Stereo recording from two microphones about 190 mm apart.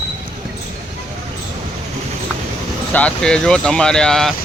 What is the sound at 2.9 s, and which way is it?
Speech, 5° left (ahead or behind).